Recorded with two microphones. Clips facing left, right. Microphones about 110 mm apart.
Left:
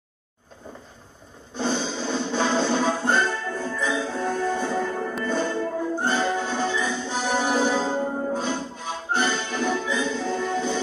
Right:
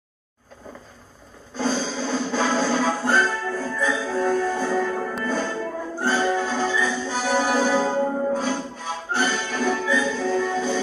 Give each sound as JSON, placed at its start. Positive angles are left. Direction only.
{"t": 1.5, "sound": "music", "side_deg": 20}